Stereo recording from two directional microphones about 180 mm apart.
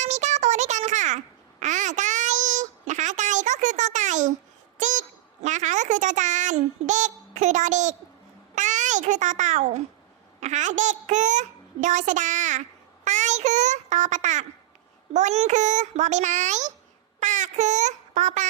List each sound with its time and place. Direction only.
0.0 s babbling: 40° right (ahead or behind)
4.8 s a sound: 45° right (ahead or behind)
8.5 s babbling: 45° right (ahead or behind)
10.4 s a child's voice: 40° right (ahead or behind)
13.1 s child singing: 40° right (ahead or behind)
15.1 s a child's voice: 40° right (ahead or behind)
17.2 s a sound: 40° right (ahead or behind)